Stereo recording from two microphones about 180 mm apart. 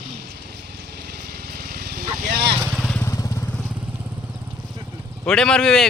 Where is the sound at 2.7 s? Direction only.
Centre (ahead or behind).